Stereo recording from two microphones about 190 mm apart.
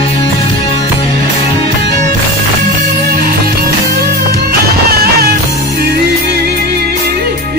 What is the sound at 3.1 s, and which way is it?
Music, 50° right (ahead or behind).